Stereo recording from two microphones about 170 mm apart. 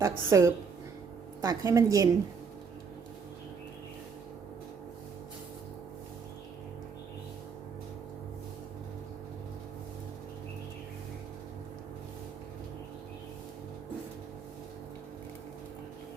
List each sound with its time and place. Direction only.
0.0 s a woman's voice: 15° right (ahead or behind)